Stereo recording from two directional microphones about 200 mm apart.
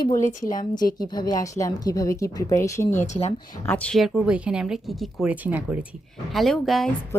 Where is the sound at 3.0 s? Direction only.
35° left (ahead or behind).